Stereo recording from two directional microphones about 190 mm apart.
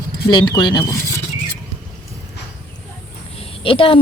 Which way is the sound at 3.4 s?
30° left (ahead or behind).